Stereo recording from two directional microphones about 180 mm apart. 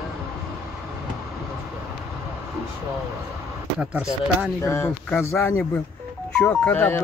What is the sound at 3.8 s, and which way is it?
Speech, 5° right (ahead or behind).